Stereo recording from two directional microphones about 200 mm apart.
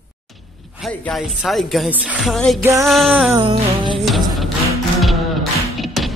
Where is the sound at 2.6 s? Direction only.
15° right (ahead or behind).